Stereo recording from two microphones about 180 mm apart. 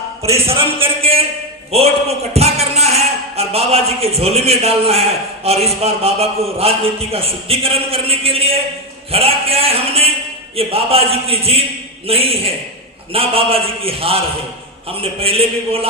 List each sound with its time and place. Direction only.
0.2 s a man's voice: 35° right (ahead or behind)